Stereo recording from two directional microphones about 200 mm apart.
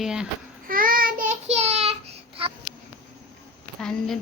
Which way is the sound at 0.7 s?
45° right (ahead or behind).